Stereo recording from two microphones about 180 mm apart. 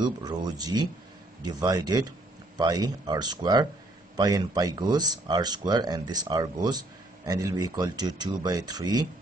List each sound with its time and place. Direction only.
0.0 s speech: 25° right (ahead or behind)